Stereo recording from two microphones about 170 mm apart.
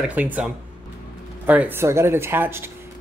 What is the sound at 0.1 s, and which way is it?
Speech, 10° right (ahead or behind).